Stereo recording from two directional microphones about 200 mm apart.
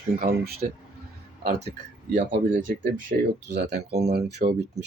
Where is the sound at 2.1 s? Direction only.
40° right (ahead or behind).